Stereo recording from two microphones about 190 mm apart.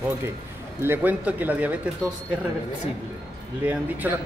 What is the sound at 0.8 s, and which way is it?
Speech, 10° right (ahead or behind).